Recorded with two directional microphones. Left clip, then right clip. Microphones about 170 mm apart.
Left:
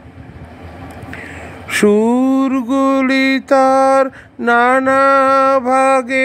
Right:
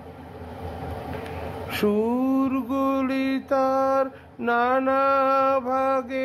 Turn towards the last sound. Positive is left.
turn(degrees=35)  # may be behind; listen again after turning